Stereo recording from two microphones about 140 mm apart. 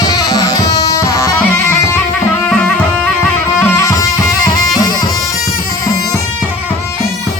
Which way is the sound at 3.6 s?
20° left (ahead or behind).